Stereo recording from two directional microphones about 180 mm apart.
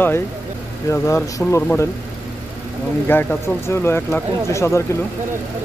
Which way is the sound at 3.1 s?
10° left (ahead or behind).